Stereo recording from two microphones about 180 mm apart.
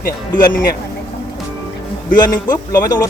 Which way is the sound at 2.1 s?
20° left (ahead or behind).